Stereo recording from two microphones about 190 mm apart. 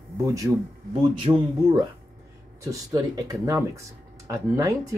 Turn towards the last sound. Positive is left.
turn(degrees=-15)  # may be behind; listen again after turning